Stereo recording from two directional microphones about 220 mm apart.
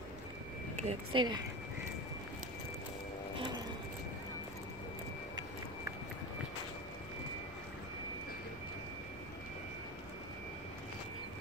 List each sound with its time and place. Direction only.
0.8 s speech: 20° right (ahead or behind)
3.3 s vehicle: 20° right (ahead or behind)